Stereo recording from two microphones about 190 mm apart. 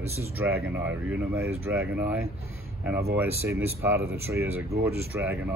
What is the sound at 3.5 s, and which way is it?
Speech, 15° right (ahead or behind).